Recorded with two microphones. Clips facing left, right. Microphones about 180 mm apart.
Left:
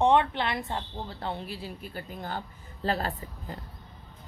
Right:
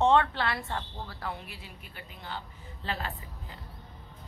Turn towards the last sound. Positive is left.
turn(degrees=40)  # may be behind; listen again after turning